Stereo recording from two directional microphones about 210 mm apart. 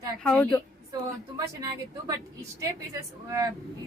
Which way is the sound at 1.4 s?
15° right (ahead or behind).